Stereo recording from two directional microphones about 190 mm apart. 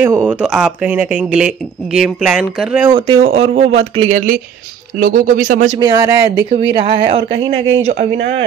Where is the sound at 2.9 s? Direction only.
30° right (ahead or behind).